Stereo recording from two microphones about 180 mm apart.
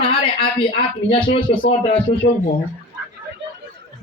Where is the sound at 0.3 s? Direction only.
30° left (ahead or behind).